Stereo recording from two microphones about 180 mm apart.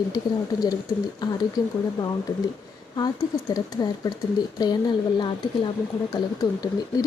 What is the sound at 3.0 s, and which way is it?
Speech, 20° left (ahead or behind).